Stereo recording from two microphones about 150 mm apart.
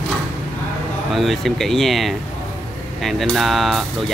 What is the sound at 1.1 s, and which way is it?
Speech, centre (ahead or behind).